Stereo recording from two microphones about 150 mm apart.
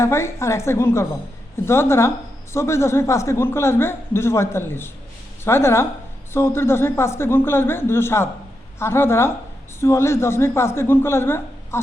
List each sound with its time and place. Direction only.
0.0 s a woman's voice: 20° left (ahead or behind)